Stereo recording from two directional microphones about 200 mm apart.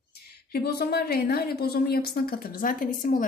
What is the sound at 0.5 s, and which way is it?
A woman's voice, 55° left (ahead or behind).